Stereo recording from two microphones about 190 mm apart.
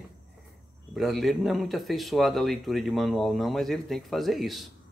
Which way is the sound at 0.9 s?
Centre (ahead or behind).